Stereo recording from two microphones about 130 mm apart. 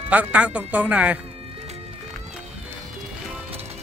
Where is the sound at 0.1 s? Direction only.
10° right (ahead or behind).